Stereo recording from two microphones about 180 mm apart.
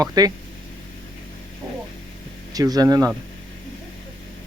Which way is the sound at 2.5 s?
20° right (ahead or behind).